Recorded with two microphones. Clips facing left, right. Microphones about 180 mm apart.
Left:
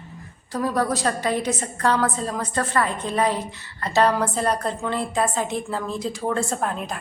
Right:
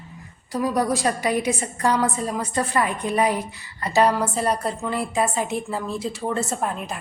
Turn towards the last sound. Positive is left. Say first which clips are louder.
# even
turn(degrees=-5)  # may be behind; listen again after turning